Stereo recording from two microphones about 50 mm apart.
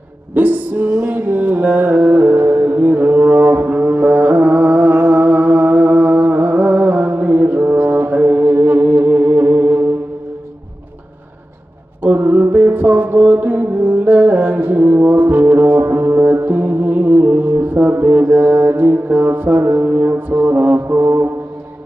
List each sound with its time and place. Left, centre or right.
0.3 s music: right
12.0 s music: right